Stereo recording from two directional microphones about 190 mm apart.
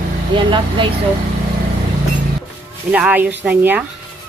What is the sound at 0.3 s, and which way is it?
Speech, 25° right (ahead or behind).